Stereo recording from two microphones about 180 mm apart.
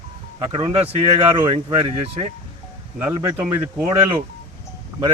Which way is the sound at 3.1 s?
15° right (ahead or behind).